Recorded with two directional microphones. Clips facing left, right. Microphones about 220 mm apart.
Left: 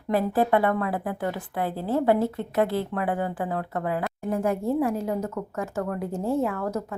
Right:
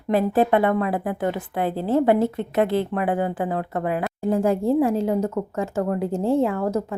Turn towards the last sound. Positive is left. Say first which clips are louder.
# right 5 dB
turn(degrees=-25)  # may be behind; listen again after turning